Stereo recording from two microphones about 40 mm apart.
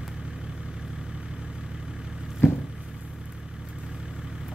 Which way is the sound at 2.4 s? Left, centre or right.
Left.